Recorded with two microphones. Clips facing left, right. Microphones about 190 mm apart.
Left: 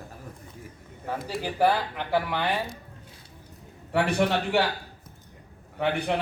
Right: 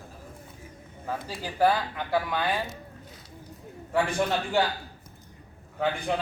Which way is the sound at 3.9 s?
65° left (ahead or behind).